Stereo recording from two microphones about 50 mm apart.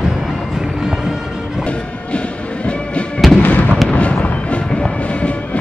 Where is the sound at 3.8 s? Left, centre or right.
Left.